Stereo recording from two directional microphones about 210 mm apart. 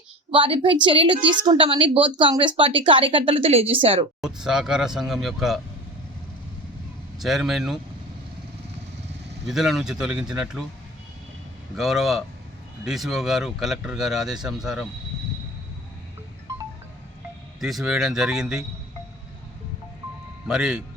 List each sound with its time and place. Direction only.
0.3 s speech: 25° right (ahead or behind)
4.4 s speech: 5° right (ahead or behind)
7.2 s speech: centre (ahead or behind)
9.5 s speech: centre (ahead or behind)
11.8 s speech: centre (ahead or behind)
17.6 s speech: centre (ahead or behind)
20.5 s speech: centre (ahead or behind)